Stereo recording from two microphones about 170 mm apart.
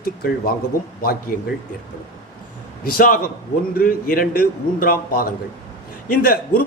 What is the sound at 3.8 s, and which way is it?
A man's voice, 55° left (ahead or behind).